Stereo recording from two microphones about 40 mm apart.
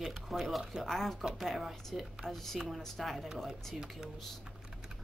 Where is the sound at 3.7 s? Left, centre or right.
Centre.